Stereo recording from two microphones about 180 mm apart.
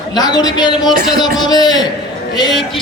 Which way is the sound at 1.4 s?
20° left (ahead or behind).